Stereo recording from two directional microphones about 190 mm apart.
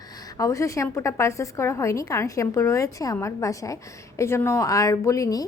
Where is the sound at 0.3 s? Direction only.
15° left (ahead or behind).